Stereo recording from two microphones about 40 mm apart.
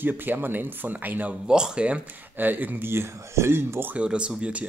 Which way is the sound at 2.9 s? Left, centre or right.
Right.